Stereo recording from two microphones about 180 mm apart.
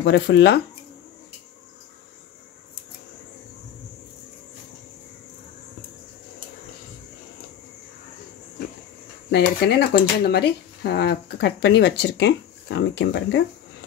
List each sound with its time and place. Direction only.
0.0 s speech: 70° left (ahead or behind)
9.3 s speech: 65° left (ahead or behind)